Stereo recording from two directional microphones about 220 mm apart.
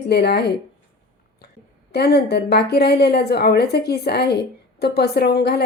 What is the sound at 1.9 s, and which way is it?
A woman's voice, 45° left (ahead or behind).